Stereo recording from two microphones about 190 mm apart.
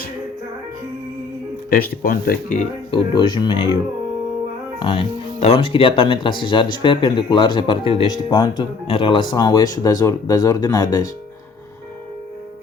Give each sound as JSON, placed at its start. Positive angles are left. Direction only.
{"t": 1.7, "sound": "speech", "side_deg": 50}
{"t": 2.9, "sound": "speech", "side_deg": 25}
{"t": 4.8, "sound": "speech", "side_deg": 25}